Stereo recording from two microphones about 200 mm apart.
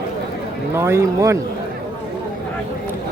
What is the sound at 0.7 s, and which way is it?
Speech, 15° right (ahead or behind).